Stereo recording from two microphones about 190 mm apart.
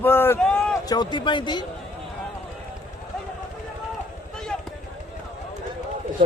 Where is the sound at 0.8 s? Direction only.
25° left (ahead or behind).